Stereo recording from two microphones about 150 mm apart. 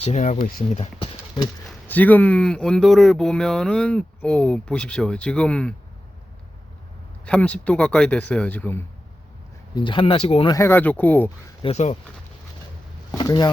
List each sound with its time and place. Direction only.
0.0 s speech: 50° left (ahead or behind)
1.9 s speech: 10° left (ahead or behind)
7.3 s speech: 10° left (ahead or behind)
9.7 s speech: 30° left (ahead or behind)
10.5 s speech: 15° left (ahead or behind)
11.6 s speech: 45° left (ahead or behind)
13.1 s speech: 25° left (ahead or behind)